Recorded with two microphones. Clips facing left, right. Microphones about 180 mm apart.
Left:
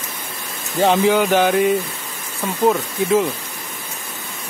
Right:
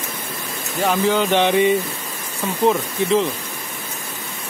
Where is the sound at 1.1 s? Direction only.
10° left (ahead or behind).